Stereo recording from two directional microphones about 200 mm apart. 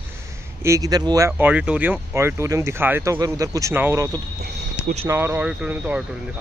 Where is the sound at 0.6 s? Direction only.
15° right (ahead or behind).